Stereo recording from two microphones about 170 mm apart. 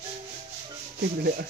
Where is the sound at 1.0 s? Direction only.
70° right (ahead or behind).